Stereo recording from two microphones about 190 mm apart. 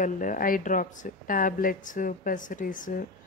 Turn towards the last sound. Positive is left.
turn(degrees=45)  # may be behind; listen again after turning